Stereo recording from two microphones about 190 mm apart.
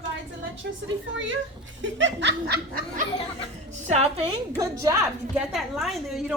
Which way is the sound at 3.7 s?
35° right (ahead or behind).